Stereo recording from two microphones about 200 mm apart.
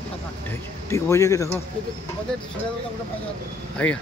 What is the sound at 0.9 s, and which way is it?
Speech, 15° left (ahead or behind).